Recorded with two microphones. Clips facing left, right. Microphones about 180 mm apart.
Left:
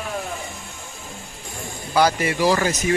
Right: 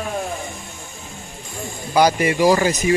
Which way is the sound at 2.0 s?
15° right (ahead or behind).